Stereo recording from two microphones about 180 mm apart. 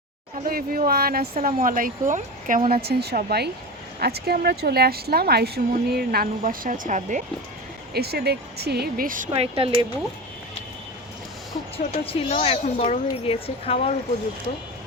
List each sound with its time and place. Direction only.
0.3 s speech: 55° right (ahead or behind)
1.3 s speech: 45° right (ahead or behind)
7.9 s speech: 60° right (ahead or behind)
9.3 s speech: 35° right (ahead or behind)
11.9 s a woman's voice: 35° left (ahead or behind)